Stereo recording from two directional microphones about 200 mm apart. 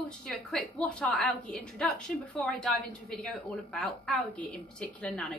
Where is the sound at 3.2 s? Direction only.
5° left (ahead or behind).